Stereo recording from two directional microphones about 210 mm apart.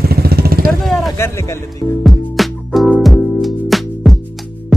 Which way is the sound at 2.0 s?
Centre (ahead or behind).